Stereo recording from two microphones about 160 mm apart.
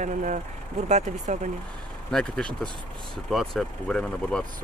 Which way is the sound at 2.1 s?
5° left (ahead or behind).